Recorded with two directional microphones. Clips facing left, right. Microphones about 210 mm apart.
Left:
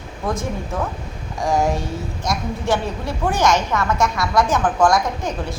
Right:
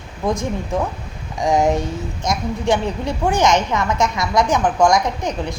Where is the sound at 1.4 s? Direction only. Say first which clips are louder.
Right 3 dB; 20° right (ahead or behind).